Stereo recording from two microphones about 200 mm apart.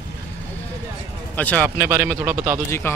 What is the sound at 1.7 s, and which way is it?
Speech, 15° right (ahead or behind).